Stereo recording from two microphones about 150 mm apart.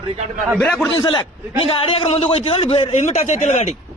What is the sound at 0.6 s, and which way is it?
Speech, 15° left (ahead or behind).